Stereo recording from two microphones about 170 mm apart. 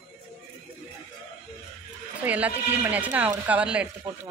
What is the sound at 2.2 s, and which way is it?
Speech, 10° right (ahead or behind).